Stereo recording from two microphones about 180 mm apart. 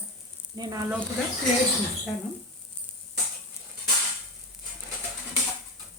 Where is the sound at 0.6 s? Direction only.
20° right (ahead or behind).